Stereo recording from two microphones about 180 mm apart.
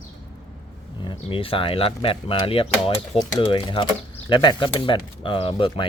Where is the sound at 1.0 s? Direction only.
30° left (ahead or behind).